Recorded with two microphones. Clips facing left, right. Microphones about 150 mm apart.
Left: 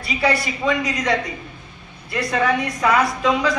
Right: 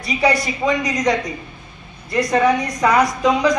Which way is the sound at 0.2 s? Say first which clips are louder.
Right 2 dB; 15° right (ahead or behind).